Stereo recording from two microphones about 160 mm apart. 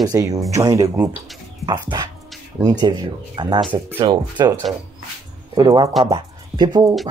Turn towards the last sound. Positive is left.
turn(degrees=-25)  # may be behind; listen again after turning